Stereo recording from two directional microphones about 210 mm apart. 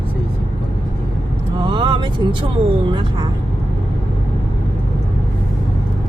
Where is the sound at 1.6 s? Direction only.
20° right (ahead or behind).